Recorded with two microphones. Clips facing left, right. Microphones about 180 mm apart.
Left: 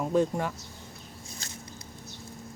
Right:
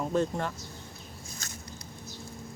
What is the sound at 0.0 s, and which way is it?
Speech, 10° left (ahead or behind).